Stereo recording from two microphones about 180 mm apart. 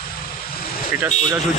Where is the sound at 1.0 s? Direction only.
20° right (ahead or behind).